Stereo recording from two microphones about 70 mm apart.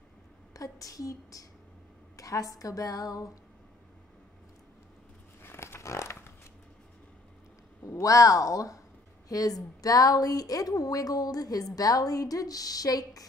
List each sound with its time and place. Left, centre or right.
0.5 s a woman's voice: left
5.4 s a sound: left
7.8 s a woman's voice: left